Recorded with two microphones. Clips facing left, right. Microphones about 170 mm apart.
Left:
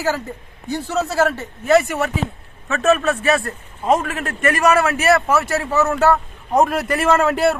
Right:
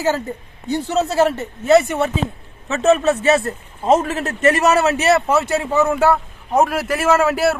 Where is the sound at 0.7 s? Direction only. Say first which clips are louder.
Right 3 dB; 20° right (ahead or behind).